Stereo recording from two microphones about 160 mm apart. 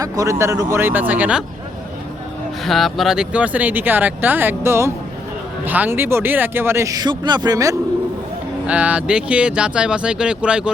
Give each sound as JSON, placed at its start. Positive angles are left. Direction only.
{"t": 0.0, "sound": "speech", "side_deg": -20}
{"t": 2.6, "sound": "speech", "side_deg": 0}
{"t": 8.6, "sound": "speech", "side_deg": -10}